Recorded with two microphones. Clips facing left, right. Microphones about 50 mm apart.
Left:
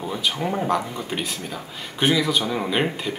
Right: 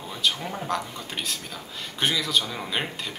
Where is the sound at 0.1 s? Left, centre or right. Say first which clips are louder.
Left 2 dB; centre.